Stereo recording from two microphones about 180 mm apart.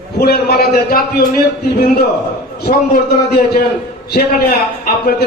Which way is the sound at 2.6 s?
60° left (ahead or behind).